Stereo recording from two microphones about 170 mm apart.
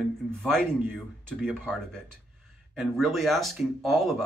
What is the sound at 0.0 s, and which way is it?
A man's voice, centre (ahead or behind).